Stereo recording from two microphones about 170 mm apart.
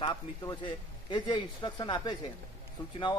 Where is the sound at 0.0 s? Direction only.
20° left (ahead or behind).